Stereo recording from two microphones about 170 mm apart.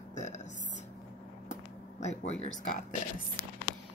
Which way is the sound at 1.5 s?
40° left (ahead or behind).